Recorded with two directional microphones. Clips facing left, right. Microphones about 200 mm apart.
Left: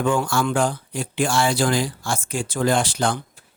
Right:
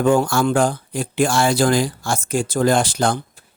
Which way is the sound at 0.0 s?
40° right (ahead or behind).